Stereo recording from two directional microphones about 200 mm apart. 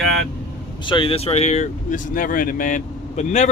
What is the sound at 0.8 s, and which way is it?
Speech, 25° left (ahead or behind).